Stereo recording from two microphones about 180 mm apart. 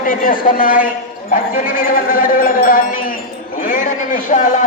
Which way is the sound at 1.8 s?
50° left (ahead or behind).